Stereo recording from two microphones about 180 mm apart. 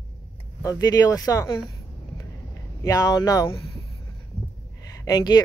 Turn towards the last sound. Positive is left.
turn(degrees=20)  # may be behind; listen again after turning